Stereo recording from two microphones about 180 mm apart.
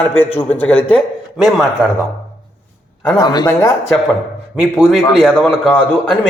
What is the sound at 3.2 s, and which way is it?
Speech, 20° left (ahead or behind).